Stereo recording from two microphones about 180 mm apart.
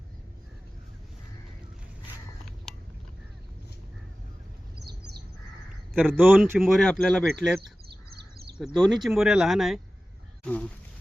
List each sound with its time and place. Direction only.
4.8 s bird: 65° right (ahead or behind)
6.0 s speech: 10° right (ahead or behind)
6.6 s speech: centre (ahead or behind)
10.4 s a sound: 5° left (ahead or behind)